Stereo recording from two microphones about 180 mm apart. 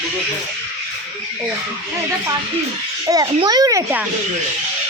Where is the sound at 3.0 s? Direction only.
20° right (ahead or behind).